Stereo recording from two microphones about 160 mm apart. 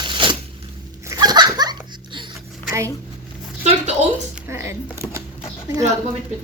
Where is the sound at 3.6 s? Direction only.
45° right (ahead or behind).